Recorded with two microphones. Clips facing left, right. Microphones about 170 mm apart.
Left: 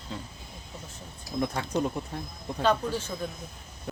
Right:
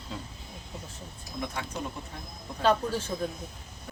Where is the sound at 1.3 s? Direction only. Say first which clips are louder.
Left 6 dB; 35° left (ahead or behind).